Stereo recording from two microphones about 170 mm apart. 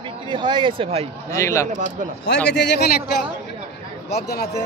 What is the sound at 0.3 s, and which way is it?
Speech, 30° right (ahead or behind).